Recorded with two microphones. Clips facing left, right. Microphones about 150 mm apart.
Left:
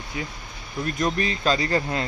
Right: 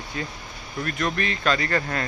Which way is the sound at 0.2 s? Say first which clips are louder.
Even; 10° left (ahead or behind).